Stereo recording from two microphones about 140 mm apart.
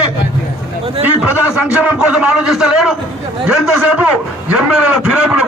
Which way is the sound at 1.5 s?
10° right (ahead or behind).